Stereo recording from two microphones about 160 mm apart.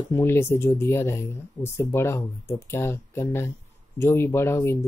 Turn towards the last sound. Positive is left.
turn(degrees=15)  # may be behind; listen again after turning